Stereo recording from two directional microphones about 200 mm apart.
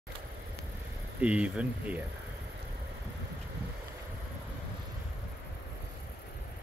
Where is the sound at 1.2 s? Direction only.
5° right (ahead or behind).